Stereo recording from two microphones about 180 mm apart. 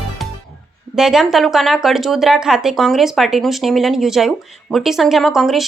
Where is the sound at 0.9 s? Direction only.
Centre (ahead or behind).